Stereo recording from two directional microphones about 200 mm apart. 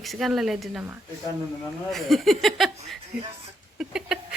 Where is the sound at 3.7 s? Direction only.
5° right (ahead or behind).